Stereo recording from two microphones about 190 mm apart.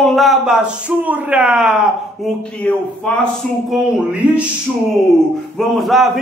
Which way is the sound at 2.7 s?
5° left (ahead or behind).